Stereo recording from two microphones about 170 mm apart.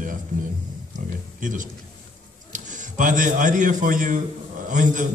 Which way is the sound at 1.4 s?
50° right (ahead or behind).